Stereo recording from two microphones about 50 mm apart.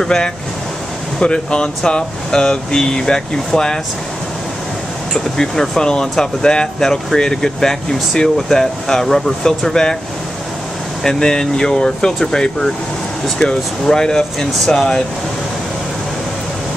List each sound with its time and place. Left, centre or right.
0.0 s speech: centre
5.1 s speech: centre
11.1 s speech: centre